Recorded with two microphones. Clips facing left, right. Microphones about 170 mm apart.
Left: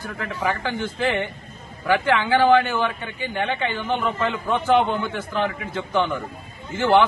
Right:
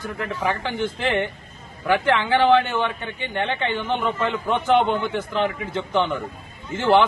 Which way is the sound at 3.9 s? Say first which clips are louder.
Even; 20° right (ahead or behind).